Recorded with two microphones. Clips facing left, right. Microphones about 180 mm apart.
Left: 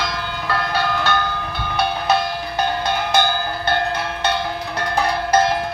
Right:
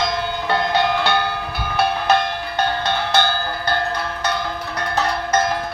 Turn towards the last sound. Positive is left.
turn(degrees=15)  # may be behind; listen again after turning